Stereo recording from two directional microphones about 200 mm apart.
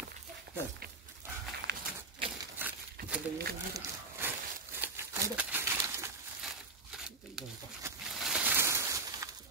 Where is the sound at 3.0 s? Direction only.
50° right (ahead or behind).